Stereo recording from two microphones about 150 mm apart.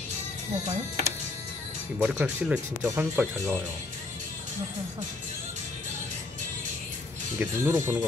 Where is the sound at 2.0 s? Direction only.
10° right (ahead or behind).